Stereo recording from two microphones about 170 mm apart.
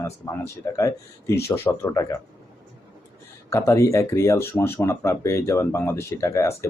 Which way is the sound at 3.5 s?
15° left (ahead or behind).